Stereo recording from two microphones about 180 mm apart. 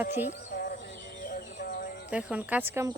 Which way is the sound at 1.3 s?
55° left (ahead or behind).